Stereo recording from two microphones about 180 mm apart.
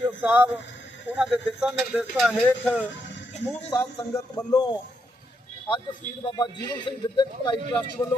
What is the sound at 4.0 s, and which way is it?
Speech, 20° left (ahead or behind).